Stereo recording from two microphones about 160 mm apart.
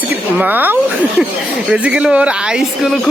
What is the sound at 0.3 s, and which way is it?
Speech, 10° right (ahead or behind).